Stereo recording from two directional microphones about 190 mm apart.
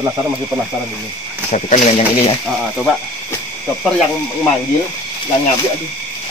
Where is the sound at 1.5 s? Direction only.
40° left (ahead or behind).